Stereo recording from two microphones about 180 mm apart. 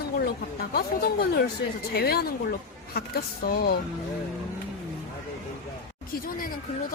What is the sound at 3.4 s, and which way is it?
Speech, 55° left (ahead or behind).